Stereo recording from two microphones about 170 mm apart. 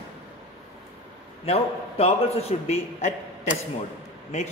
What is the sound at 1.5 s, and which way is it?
A man's voice, 35° left (ahead or behind).